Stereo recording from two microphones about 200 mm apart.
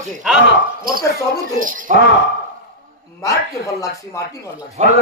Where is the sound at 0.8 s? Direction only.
45° right (ahead or behind).